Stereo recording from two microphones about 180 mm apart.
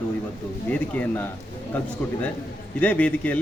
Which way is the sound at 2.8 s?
10° left (ahead or behind).